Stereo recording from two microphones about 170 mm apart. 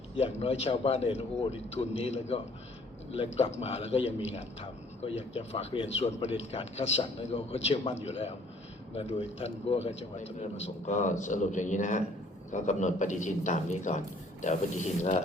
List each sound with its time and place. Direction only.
0.2 s a man's voice: 40° left (ahead or behind)